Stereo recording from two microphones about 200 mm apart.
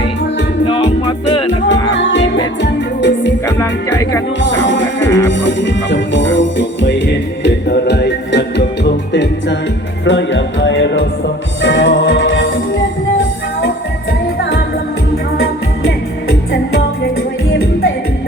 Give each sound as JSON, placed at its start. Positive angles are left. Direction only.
{"t": 0.7, "sound": "music", "side_deg": 25}
{"t": 2.0, "sound": "music", "side_deg": 65}
{"t": 3.9, "sound": "music", "side_deg": 15}
{"t": 4.4, "sound": "music", "side_deg": 65}
{"t": 15.1, "sound": "music", "side_deg": 50}